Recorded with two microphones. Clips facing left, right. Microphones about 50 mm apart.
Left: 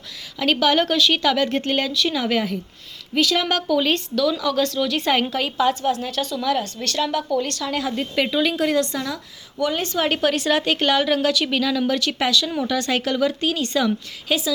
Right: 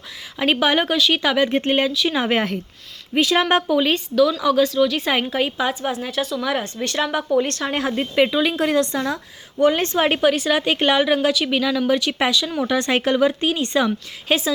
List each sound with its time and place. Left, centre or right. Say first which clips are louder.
0.3 s a woman's voice: even; right
0.9 s speech: even; centre
1.2 s a woman's voice: right 1 dB; centre
3.8 s a woman's voice: right 3 dB; centre
5.3 s a woman's voice: left 1 dB; centre
6.5 s a woman's voice: even; right
8.1 s a woman's voice: right 3 dB; centre
8.6 s a woman's voice: right 2 dB; right
9.1 s a woman's voice: right 4 dB; right
10.2 s a woman's voice: right 2 dB; centre
10.8 s a woman's voice: right 2 dB; centre
12.5 s a woman's voice: right 2 dB; right
14.3 s a woman's voice: right 2 dB; right